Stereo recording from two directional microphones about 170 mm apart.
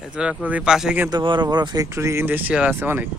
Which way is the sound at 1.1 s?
25° right (ahead or behind).